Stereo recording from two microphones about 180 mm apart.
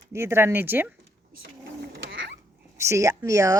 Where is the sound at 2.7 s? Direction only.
15° right (ahead or behind).